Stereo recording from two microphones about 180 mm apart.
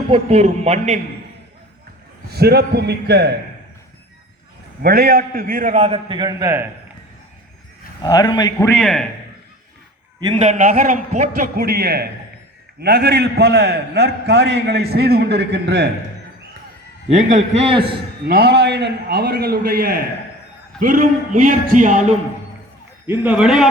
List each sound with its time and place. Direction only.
0.1 s a man's voice: 35° right (ahead or behind)
2.3 s a man's voice: 65° right (ahead or behind)
4.8 s a man's voice: 60° right (ahead or behind); by 6.7 s 15° right (ahead or behind)
8.0 s a man's voice: 20° left (ahead or behind)
8.5 s a man's voice: 10° left (ahead or behind)
10.3 s a man's voice: 40° right (ahead or behind)
11.5 s a man's voice: 60° right (ahead or behind)
17.1 s a man's voice: 45° right (ahead or behind)
18.3 s a man's voice: 65° right (ahead or behind); by 22.1 s 45° right (ahead or behind)
23.0 s a man's voice: 10° right (ahead or behind)